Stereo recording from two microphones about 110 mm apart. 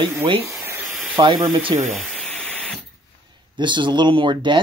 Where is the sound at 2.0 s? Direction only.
10° left (ahead or behind).